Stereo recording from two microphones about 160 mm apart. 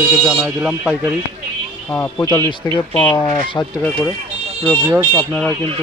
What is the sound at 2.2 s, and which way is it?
Speech, 25° left (ahead or behind).